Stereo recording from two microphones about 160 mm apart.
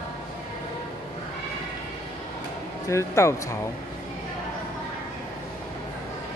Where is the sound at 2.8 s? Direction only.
20° left (ahead or behind).